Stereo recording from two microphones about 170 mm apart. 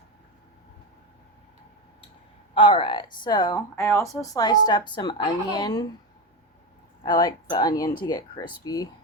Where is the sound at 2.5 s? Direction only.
30° left (ahead or behind).